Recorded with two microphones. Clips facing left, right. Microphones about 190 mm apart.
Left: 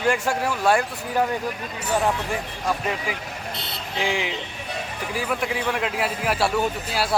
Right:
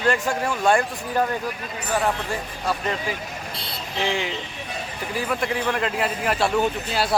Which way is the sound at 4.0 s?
10° left (ahead or behind).